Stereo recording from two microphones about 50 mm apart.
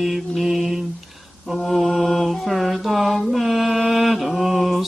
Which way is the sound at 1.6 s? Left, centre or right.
Centre.